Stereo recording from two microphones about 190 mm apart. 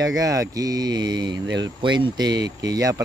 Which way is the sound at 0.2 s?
15° right (ahead or behind).